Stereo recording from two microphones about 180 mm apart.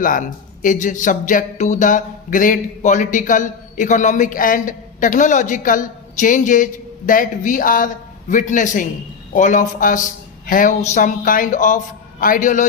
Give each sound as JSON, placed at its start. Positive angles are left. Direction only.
{"t": 0.0, "sound": "speech", "side_deg": 50}